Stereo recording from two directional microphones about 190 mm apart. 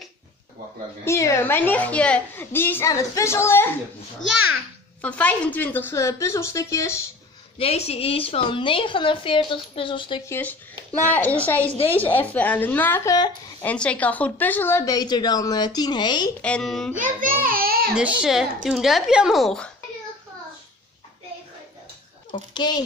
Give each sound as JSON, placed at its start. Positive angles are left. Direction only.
{"t": 1.0, "sound": "a child's voice", "side_deg": 15}
{"t": 5.0, "sound": "a child's voice", "side_deg": 10}
{"t": 7.5, "sound": "a woman's voice", "side_deg": 30}
{"t": 10.2, "sound": "a child's voice", "side_deg": 10}
{"t": 13.7, "sound": "a woman's voice", "side_deg": 5}
{"t": 16.3, "sound": "speech", "side_deg": 5}
{"t": 16.9, "sound": "a child's voice", "side_deg": -45}
{"t": 17.9, "sound": "speech", "side_deg": -5}
{"t": 22.3, "sound": "speech", "side_deg": 25}